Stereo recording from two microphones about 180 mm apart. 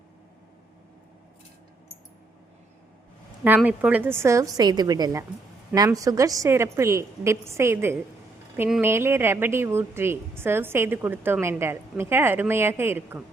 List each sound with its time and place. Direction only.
3.4 s a woman's voice: 10° right (ahead or behind)